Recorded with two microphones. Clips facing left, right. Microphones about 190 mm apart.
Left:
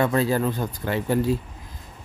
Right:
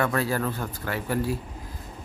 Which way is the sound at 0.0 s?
20° left (ahead or behind).